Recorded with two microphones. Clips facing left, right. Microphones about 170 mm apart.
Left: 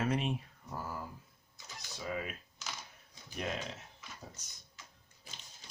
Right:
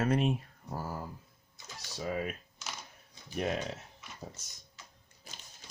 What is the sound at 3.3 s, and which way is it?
Speech, 50° right (ahead or behind).